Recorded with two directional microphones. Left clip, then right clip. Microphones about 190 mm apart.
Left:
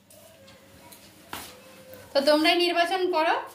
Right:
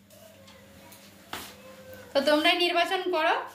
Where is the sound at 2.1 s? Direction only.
10° left (ahead or behind).